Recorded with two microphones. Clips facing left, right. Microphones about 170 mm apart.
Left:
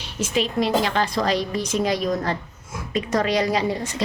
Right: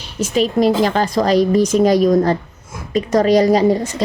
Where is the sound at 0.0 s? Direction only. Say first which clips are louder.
Right 6 dB; 40° right (ahead or behind).